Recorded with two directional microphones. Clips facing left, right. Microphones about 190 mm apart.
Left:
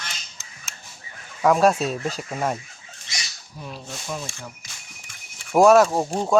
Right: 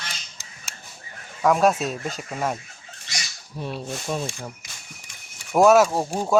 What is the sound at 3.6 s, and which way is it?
Speech, 35° right (ahead or behind).